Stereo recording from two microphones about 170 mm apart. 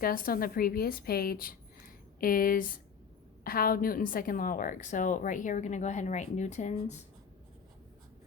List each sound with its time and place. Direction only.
0.0 s a woman's voice: 60° left (ahead or behind); by 7.0 s 45° left (ahead or behind)